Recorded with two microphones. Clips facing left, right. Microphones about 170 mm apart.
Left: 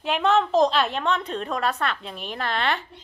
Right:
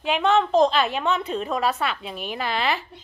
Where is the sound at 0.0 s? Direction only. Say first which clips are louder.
Right 1 dB; centre (ahead or behind).